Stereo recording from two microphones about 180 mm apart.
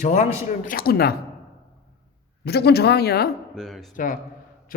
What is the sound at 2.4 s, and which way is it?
Speech, 65° left (ahead or behind).